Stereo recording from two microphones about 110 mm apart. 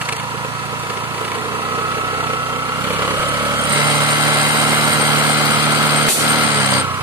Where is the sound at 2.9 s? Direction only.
15° right (ahead or behind).